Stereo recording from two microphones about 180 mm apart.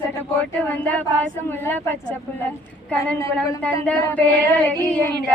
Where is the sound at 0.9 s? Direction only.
10° left (ahead or behind).